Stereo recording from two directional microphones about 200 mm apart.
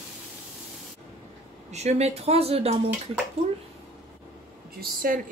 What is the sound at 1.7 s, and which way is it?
Speech, 35° right (ahead or behind).